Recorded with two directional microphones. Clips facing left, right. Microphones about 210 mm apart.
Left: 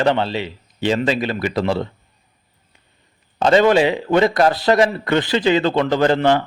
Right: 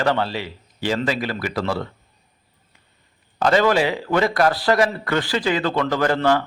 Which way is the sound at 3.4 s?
25° left (ahead or behind).